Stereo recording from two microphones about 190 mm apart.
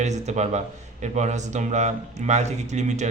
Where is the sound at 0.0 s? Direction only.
35° right (ahead or behind).